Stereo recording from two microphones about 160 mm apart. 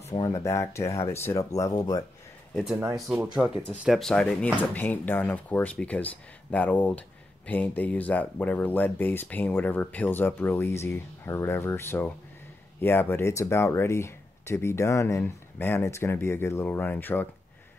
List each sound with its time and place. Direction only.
0.0 s speech: 20° left (ahead or behind)
2.5 s speech: 5° right (ahead or behind); by 17.3 s 10° left (ahead or behind)